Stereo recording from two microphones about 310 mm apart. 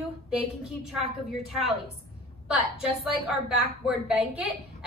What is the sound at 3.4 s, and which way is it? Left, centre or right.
A woman's voice, centre.